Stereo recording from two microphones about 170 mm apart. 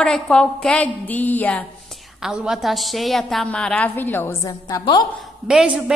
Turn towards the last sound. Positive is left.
turn(degrees=-5)  # may be behind; listen again after turning